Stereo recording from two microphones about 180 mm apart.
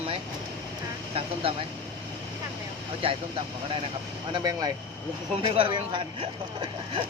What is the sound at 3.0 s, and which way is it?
Speech, 30° right (ahead or behind).